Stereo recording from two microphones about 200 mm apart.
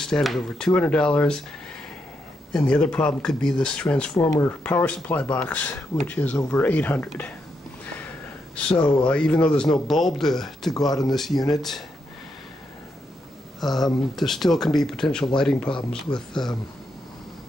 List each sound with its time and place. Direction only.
0.0 s speech: centre (ahead or behind)
2.5 s speech: 5° left (ahead or behind)
8.5 s speech: 5° left (ahead or behind)
10.9 s speech: 20° left (ahead or behind)
11.1 s speech: centre (ahead or behind)
13.6 s speech: centre (ahead or behind)